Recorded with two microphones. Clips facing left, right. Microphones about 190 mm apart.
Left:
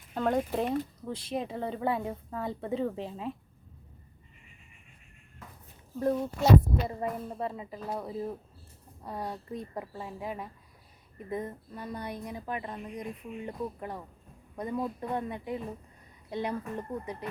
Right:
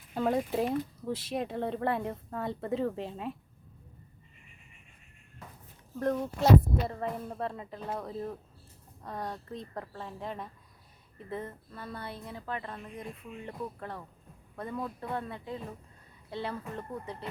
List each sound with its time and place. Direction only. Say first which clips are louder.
0.1 s speech: left 1 dB; 5° right (ahead or behind)
6.0 s a woman's voice: left 1 dB; 10° left (ahead or behind)